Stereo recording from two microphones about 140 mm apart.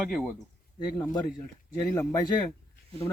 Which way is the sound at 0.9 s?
25° left (ahead or behind).